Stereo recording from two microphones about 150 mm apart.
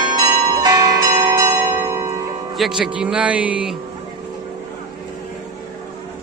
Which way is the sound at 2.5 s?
Centre (ahead or behind).